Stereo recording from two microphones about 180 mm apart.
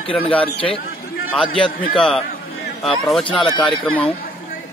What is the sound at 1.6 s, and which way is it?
A man's voice, 5° left (ahead or behind).